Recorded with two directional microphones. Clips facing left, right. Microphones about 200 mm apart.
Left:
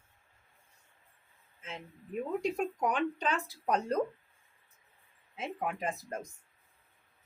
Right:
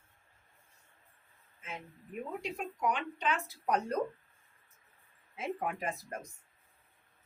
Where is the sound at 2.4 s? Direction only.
40° left (ahead or behind).